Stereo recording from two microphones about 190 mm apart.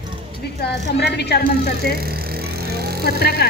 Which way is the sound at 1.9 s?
55° right (ahead or behind).